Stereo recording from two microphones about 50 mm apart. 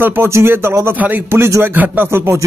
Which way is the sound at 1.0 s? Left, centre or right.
Right.